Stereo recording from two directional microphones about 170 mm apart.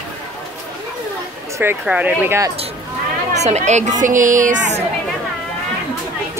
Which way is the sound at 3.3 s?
40° right (ahead or behind).